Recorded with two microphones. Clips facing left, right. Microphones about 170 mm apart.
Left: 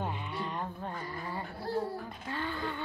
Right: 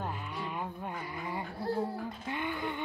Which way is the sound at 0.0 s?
Centre (ahead or behind).